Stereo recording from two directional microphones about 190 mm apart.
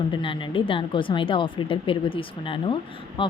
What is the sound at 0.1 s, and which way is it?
A woman's voice, 25° left (ahead or behind).